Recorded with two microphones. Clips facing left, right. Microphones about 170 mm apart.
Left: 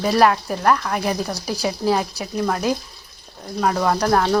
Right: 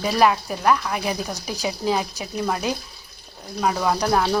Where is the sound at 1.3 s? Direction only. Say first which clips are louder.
Left 3 dB; 35° left (ahead or behind).